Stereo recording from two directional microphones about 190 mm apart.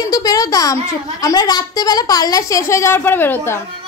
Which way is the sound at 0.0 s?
20° left (ahead or behind).